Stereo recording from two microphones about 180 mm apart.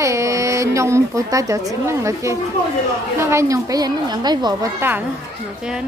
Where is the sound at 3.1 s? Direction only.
15° right (ahead or behind).